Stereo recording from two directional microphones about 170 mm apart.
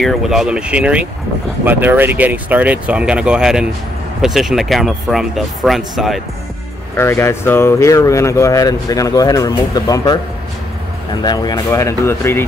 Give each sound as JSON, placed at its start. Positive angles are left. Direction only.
{"t": 0.0, "sound": "speech", "side_deg": 0}
{"t": 7.0, "sound": "speech", "side_deg": 15}
{"t": 11.2, "sound": "speech", "side_deg": 25}